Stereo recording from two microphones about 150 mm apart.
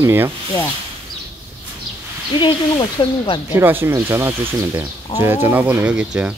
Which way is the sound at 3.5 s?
15° right (ahead or behind).